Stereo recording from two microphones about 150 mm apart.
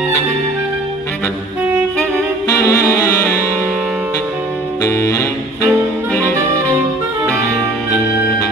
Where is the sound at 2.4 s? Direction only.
20° left (ahead or behind).